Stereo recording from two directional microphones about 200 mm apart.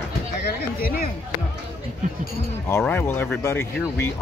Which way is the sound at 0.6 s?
50° left (ahead or behind).